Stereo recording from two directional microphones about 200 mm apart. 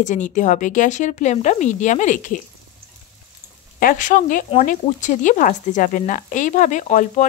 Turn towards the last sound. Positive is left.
turn(degrees=40)  # may be behind; listen again after turning